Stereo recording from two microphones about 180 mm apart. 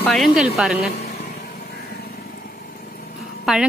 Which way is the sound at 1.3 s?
50° left (ahead or behind).